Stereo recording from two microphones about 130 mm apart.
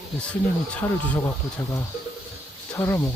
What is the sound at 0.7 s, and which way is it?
Speech, 15° left (ahead or behind).